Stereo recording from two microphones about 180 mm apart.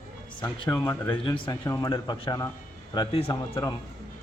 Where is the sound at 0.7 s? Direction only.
20° left (ahead or behind).